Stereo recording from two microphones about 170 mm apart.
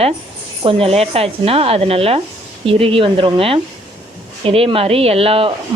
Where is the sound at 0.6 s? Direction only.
35° right (ahead or behind).